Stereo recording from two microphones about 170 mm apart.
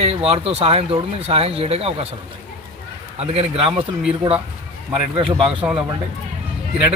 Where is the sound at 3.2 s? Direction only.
35° right (ahead or behind).